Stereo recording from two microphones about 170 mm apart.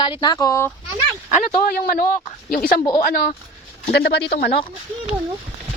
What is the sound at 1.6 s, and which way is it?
Speech, 55° left (ahead or behind).